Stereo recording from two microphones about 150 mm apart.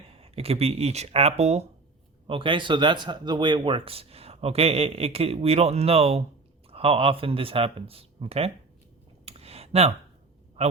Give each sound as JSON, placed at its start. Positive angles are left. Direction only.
{"t": 0.2, "sound": "speech", "side_deg": -40}
{"t": 9.2, "sound": "a sound", "side_deg": -40}
{"t": 10.6, "sound": "a man's voice", "side_deg": -45}